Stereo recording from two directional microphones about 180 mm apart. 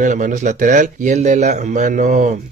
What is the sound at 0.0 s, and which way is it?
Speech, 45° right (ahead or behind).